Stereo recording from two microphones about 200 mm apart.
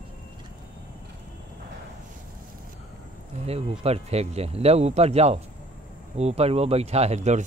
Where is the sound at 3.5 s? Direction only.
30° right (ahead or behind).